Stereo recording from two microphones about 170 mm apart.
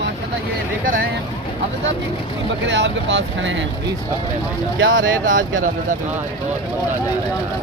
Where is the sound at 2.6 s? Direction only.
90° right.